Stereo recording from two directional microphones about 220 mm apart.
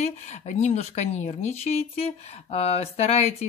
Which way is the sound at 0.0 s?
30° left (ahead or behind).